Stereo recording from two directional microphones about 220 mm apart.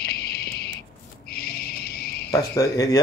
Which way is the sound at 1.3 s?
45° left (ahead or behind).